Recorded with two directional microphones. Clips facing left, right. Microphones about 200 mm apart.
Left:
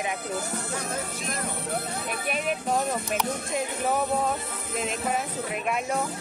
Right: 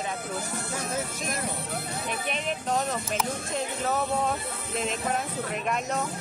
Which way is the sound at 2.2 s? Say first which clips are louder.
Left 5 dB; 10° left (ahead or behind).